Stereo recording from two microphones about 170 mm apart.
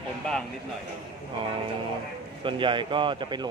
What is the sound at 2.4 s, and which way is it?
Speech, 30° right (ahead or behind).